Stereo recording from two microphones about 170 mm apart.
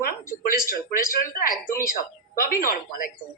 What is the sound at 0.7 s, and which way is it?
A woman's voice, 55° left (ahead or behind).